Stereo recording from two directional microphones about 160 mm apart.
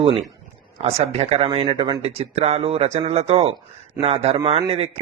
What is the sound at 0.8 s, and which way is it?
Speech, 40° right (ahead or behind).